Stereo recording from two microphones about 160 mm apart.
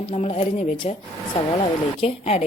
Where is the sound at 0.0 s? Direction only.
40° left (ahead or behind).